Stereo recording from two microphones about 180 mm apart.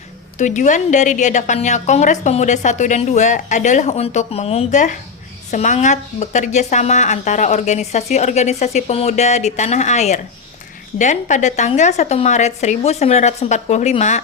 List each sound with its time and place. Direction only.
0.3 s a woman's voice: 40° left (ahead or behind)